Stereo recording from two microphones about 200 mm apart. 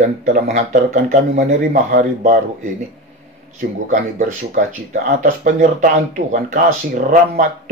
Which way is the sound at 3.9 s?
40° right (ahead or behind).